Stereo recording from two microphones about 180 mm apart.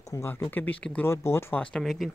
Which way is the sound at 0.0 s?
15° left (ahead or behind).